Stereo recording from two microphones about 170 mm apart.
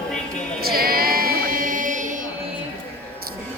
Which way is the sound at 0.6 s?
60° right (ahead or behind).